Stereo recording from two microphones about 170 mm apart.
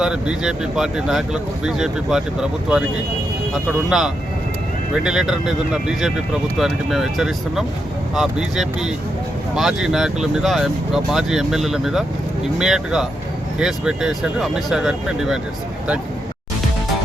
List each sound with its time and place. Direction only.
0.0 s speech: 5° right (ahead or behind)